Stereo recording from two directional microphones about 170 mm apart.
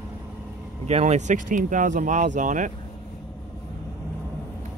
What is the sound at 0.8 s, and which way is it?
Speech, 40° right (ahead or behind).